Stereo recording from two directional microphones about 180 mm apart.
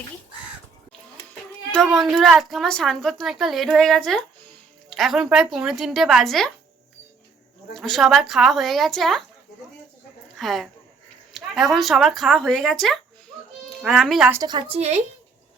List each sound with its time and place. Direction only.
2.0 s a woman's voice: centre (ahead or behind)
7.7 s a woman's voice: centre (ahead or behind)
10.3 s a woman's voice: centre (ahead or behind)
14.4 s a woman's voice: 25° right (ahead or behind)
14.8 s speech: 40° right (ahead or behind)